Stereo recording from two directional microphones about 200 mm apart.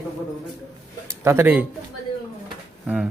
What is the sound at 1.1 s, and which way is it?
Speech, 15° right (ahead or behind).